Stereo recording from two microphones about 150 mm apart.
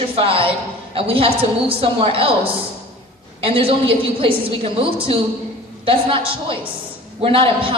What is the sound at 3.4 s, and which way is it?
A woman's voice, 35° right (ahead or behind).